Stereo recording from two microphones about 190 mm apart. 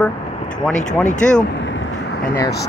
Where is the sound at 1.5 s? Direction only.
80° left.